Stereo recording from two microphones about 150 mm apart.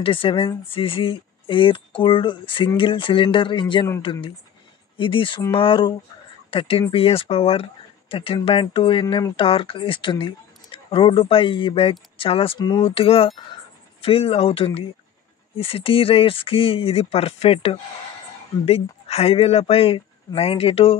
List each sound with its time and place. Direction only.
0.0 s speech: 35° left (ahead or behind)